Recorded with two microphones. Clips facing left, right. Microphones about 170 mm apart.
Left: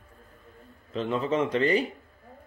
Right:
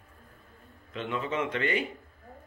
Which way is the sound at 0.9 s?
35° left (ahead or behind).